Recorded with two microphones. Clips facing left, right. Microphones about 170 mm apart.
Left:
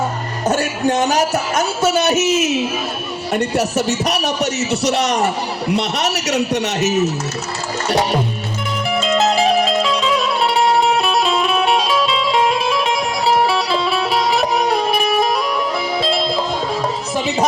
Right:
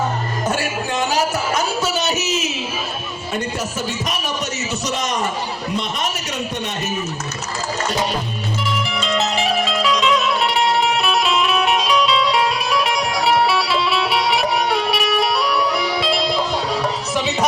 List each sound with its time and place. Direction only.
0.4 s music: 40° left (ahead or behind)
1.5 s a sound: 60° left (ahead or behind)
3.3 s a man's voice: 70° left (ahead or behind)
8.9 s music: 40° left (ahead or behind)
13.7 s music: 45° left (ahead or behind)
15.0 s music: 25° left (ahead or behind)